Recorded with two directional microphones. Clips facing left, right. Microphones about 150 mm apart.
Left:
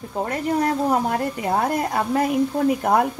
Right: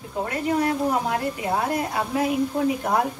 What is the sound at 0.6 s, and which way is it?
A woman's voice, 45° left (ahead or behind).